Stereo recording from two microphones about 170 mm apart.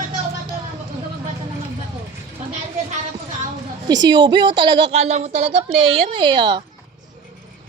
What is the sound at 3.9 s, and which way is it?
A woman's voice, 25° right (ahead or behind).